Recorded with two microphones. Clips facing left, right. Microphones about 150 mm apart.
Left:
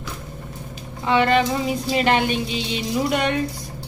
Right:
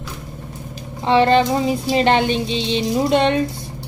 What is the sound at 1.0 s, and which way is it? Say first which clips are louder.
Music: right 4 dB; 30° right (ahead or behind).